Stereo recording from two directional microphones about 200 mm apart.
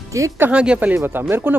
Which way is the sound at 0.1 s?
15° right (ahead or behind).